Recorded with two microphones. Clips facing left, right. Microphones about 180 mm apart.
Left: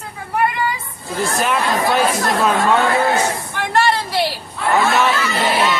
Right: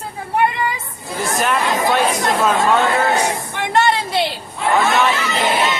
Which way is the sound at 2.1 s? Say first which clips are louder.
Even; 20° right (ahead or behind).